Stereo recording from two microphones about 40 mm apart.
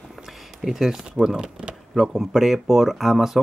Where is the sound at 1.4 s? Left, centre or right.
Right.